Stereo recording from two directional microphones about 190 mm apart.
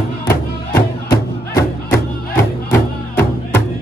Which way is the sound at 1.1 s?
15° left (ahead or behind).